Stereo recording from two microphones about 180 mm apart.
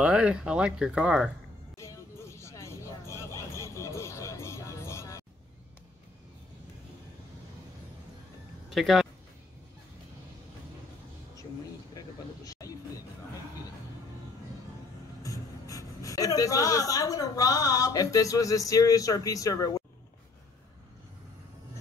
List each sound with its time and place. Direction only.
0.0 s speech: 5° right (ahead or behind)
1.8 s music: 15° left (ahead or behind)
8.6 s speech: centre (ahead or behind)
12.4 s a sound: 20° left (ahead or behind)
15.2 s speech: 20° left (ahead or behind)